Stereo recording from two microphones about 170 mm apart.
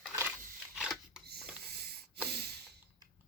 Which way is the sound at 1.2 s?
70° right (ahead or behind).